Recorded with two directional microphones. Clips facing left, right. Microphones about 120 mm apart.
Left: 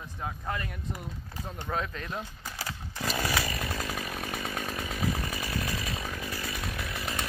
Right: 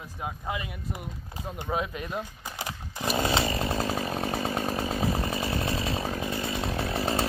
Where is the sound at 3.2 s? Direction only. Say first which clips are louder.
Right 6 dB; 25° right (ahead or behind).